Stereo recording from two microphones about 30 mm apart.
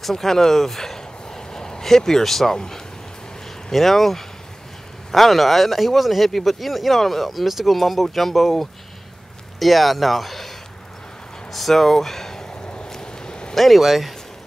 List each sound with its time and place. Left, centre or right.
0.1 s a sound: centre
1.9 s speech: centre
3.7 s speech: centre
11.5 s speech: centre
12.9 s a sound: left
13.6 s speech: centre